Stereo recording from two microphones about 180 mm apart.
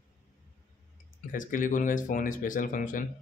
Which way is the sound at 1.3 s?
45° left (ahead or behind).